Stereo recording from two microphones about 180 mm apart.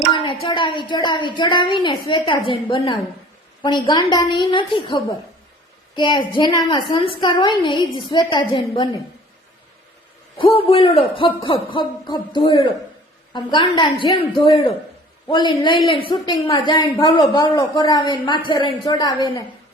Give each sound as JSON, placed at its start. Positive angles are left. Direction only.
{"t": 0.1, "sound": "a sound", "side_deg": 30}
{"t": 0.4, "sound": "a woman's voice", "side_deg": 25}
{"t": 10.3, "sound": "a man's voice", "side_deg": 30}